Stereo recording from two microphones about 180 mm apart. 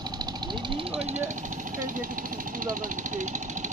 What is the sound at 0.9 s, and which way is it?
Speech, 35° right (ahead or behind).